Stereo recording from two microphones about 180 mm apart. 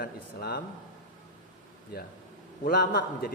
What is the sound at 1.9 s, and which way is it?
Speech, 60° left (ahead or behind).